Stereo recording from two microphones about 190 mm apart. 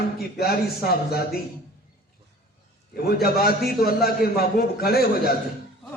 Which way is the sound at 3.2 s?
55° left (ahead or behind).